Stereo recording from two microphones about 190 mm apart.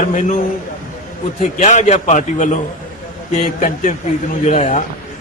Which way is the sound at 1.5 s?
40° left (ahead or behind).